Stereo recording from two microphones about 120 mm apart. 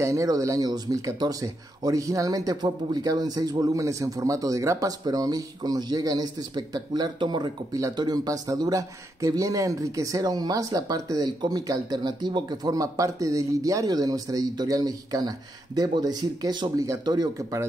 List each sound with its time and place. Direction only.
0.0 s speech: 25° right (ahead or behind)